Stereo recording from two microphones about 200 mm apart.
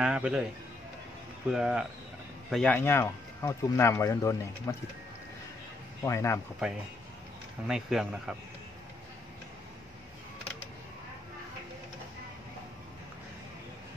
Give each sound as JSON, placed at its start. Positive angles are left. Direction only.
{"t": 0.0, "sound": "speech", "side_deg": -5}
{"t": 1.5, "sound": "speech", "side_deg": 0}
{"t": 6.0, "sound": "speech", "side_deg": 15}
{"t": 7.6, "sound": "speech", "side_deg": 0}